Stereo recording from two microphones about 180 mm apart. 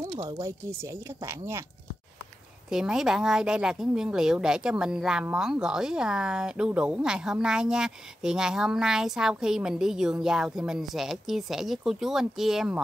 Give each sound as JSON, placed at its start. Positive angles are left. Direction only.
{"t": 0.0, "sound": "speech", "side_deg": -20}
{"t": 2.7, "sound": "speech", "side_deg": -5}